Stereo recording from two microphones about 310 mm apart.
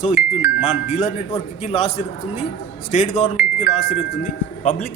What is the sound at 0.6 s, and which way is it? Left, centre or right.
A man's voice, left.